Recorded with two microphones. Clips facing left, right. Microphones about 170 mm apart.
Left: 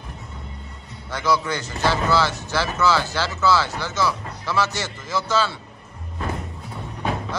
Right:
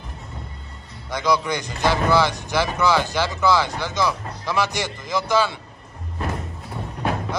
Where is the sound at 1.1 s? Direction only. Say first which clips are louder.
Right 1 dB; 15° right (ahead or behind).